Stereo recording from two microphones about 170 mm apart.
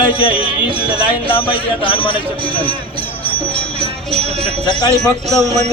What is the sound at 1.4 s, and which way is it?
Speech, 30° left (ahead or behind).